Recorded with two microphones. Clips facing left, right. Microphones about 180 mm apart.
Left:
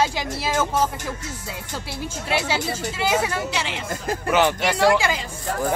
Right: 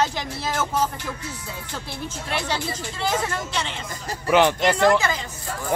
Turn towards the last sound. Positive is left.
turn(degrees=10)  # may be behind; listen again after turning